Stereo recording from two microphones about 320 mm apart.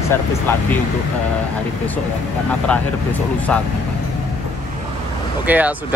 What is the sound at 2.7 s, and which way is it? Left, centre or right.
Speech, centre.